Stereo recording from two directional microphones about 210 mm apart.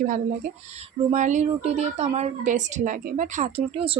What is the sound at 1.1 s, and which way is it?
A woman's voice, 35° right (ahead or behind).